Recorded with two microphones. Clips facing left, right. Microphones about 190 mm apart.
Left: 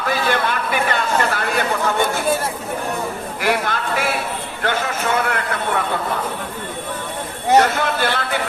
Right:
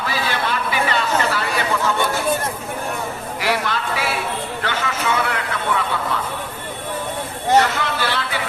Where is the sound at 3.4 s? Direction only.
50° left (ahead or behind).